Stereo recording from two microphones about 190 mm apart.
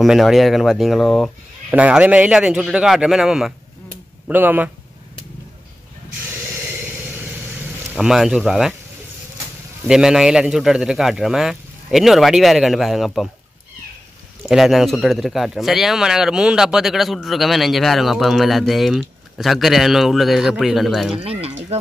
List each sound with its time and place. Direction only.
0.0 s speech: centre (ahead or behind)
8.0 s speech: 5° right (ahead or behind)
9.8 s speech: 5° right (ahead or behind)
14.5 s speech: centre (ahead or behind)
21.2 s a sound: 30° right (ahead or behind)